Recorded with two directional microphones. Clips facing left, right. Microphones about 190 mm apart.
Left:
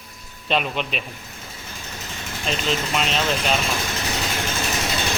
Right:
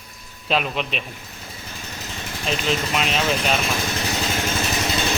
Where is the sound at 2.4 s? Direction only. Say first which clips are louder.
Right 1 dB; centre (ahead or behind).